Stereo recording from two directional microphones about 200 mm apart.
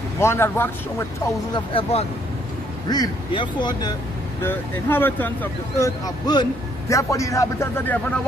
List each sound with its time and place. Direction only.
0.2 s speech: 15° left (ahead or behind)
1.5 s speech: 25° left (ahead or behind)
4.4 s speech: 10° left (ahead or behind)